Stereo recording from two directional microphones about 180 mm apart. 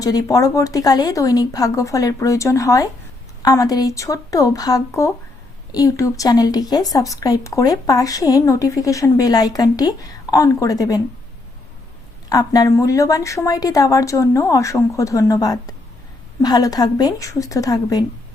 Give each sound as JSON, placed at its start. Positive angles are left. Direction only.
{"t": 0.0, "sound": "a woman's voice", "side_deg": 20}
{"t": 12.3, "sound": "a woman's voice", "side_deg": 20}